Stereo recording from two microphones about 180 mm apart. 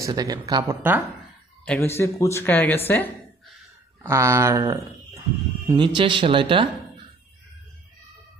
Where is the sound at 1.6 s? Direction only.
10° left (ahead or behind).